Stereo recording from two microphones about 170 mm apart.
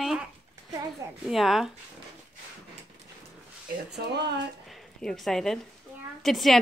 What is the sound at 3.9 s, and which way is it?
Speech, 80° right.